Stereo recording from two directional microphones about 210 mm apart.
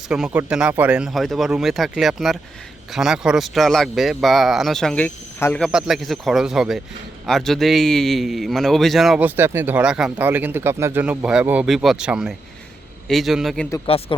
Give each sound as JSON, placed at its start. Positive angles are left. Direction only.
{"t": 0.1, "sound": "a man's voice", "side_deg": -5}
{"t": 13.8, "sound": "speech", "side_deg": 25}